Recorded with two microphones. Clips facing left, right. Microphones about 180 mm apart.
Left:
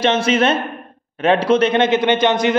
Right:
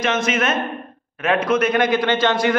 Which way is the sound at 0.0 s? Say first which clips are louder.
Left 5 dB; 30° left (ahead or behind).